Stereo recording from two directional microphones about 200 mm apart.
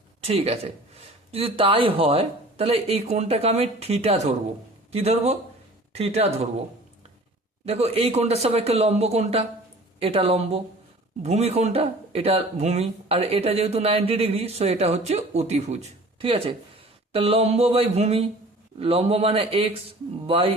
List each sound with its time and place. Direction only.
0.2 s speech: 30° right (ahead or behind)
7.6 s speech: 30° right (ahead or behind)